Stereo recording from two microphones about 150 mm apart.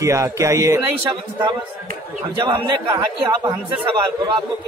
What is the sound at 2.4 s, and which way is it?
A man's voice, 30° right (ahead or behind).